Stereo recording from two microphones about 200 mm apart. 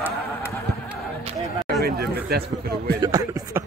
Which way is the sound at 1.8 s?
50° right (ahead or behind).